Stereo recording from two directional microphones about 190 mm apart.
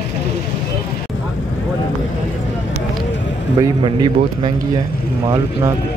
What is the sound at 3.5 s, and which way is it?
Speech, 25° right (ahead or behind).